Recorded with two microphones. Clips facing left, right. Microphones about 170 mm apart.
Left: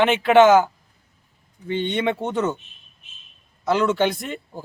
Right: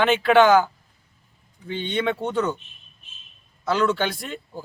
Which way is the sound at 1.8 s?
20° left (ahead or behind).